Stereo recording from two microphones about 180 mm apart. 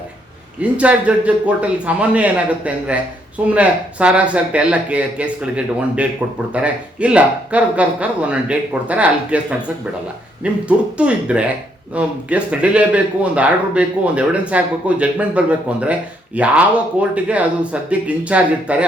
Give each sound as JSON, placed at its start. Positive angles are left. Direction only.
{"t": 0.6, "sound": "speech", "side_deg": -5}